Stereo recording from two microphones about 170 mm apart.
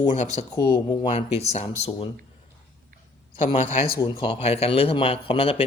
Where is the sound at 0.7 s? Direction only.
30° left (ahead or behind).